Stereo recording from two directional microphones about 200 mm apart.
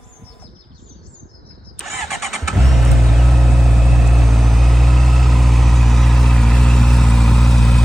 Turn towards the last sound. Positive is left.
turn(degrees=0)  # may be behind; listen again after turning